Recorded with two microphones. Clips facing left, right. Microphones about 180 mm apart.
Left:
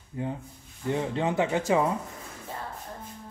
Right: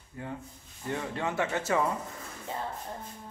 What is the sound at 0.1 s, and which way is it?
Speech, 20° left (ahead or behind).